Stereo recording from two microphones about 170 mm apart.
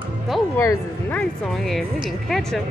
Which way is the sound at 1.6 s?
Centre (ahead or behind).